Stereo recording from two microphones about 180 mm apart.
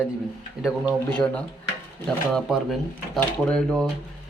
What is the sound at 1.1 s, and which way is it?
A man's voice, 5° left (ahead or behind).